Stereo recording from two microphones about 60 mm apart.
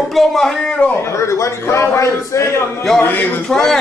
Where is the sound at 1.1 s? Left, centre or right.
Left.